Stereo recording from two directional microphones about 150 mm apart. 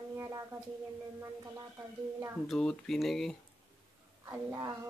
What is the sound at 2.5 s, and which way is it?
Speech, 5° left (ahead or behind).